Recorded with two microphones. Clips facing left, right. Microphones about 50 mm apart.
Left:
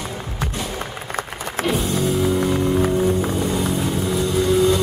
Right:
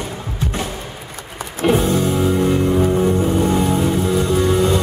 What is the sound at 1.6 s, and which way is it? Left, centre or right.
Music, right.